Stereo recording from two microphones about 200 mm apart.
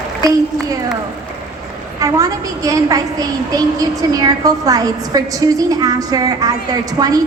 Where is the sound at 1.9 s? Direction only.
15° right (ahead or behind).